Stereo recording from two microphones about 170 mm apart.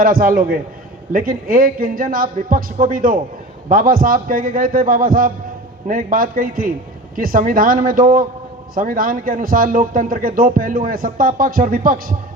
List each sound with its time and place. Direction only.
0.0 s a man's voice: 55° right (ahead or behind)